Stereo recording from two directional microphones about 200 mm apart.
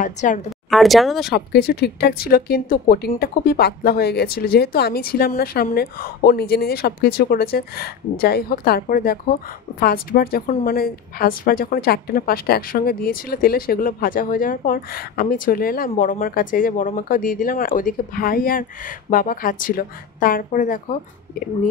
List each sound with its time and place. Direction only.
0.0 s a woman's voice: 40° left (ahead or behind)
0.5 s speech: centre (ahead or behind)
1.3 s a woman's voice: 50° left (ahead or behind)